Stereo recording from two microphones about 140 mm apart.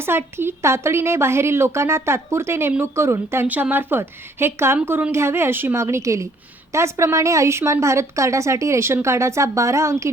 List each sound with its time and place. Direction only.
0.0 s a woman's voice: 15° right (ahead or behind)